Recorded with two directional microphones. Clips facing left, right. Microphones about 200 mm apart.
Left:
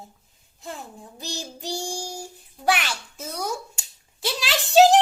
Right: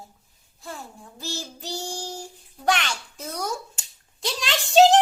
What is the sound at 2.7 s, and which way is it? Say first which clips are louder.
A child's voice: even; 5° left (ahead or behind).